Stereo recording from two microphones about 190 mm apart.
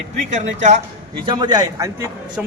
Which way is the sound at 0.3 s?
40° right (ahead or behind).